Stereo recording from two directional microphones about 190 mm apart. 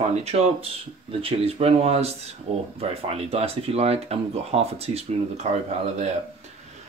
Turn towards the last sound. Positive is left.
turn(degrees=-35)  # may be behind; listen again after turning